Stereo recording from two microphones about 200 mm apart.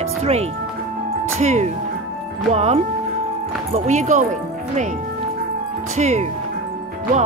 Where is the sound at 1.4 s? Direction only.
35° right (ahead or behind).